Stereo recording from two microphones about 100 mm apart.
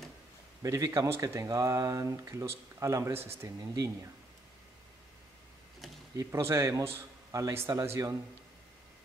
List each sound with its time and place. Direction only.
0.6 s speech: 35° right (ahead or behind)
6.1 s speech: 30° right (ahead or behind)